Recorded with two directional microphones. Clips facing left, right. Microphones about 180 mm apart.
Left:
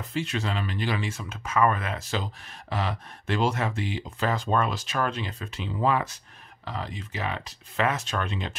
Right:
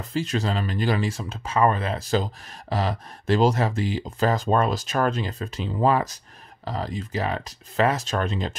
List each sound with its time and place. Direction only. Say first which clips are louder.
0.1 s speech: right 4 dB; 40° right (ahead or behind)